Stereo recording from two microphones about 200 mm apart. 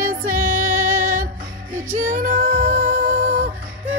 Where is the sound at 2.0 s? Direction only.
45° right (ahead or behind).